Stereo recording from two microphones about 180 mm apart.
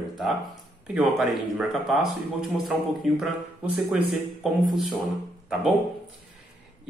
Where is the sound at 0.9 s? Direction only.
Centre (ahead or behind).